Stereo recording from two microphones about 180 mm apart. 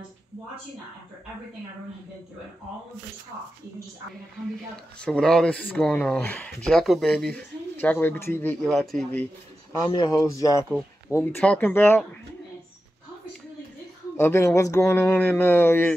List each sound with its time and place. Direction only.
4.9 s speech: 5° left (ahead or behind)
9.8 s speech: 20° left (ahead or behind)
14.1 s speech: 15° left (ahead or behind)